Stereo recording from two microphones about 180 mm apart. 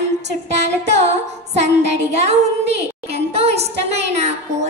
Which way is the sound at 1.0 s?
40° right (ahead or behind).